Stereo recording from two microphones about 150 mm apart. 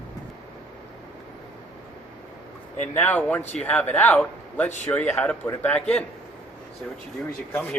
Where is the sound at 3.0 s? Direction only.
10° left (ahead or behind).